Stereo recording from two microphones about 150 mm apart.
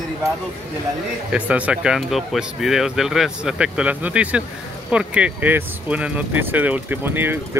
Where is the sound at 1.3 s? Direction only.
10° right (ahead or behind).